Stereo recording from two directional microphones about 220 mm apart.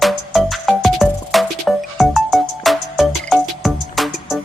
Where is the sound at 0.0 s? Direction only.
Centre (ahead or behind).